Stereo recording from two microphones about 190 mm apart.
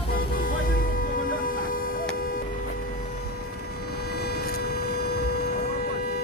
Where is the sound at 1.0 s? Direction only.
50° left (ahead or behind).